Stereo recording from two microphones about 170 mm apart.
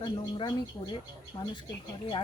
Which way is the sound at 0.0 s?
25° left (ahead or behind).